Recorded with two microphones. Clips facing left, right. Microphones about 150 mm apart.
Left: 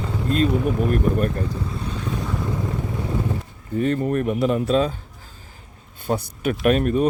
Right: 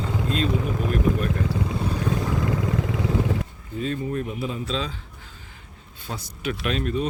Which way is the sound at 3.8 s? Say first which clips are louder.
Left 6 dB; 70° left (ahead or behind).